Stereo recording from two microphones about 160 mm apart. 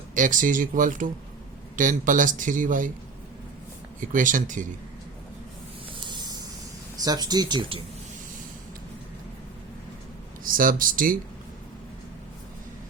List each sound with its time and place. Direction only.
0.1 s speech: 55° right (ahead or behind)
4.0 s speech: 55° right (ahead or behind)
6.1 s a sound: 25° right (ahead or behind)
6.9 s speech: 25° right (ahead or behind)
10.4 s speech: 60° right (ahead or behind)